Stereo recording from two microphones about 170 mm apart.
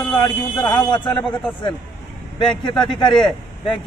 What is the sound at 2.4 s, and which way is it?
A man's voice, 30° left (ahead or behind).